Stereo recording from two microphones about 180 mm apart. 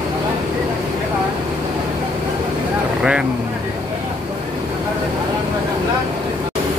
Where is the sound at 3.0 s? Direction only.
5° right (ahead or behind).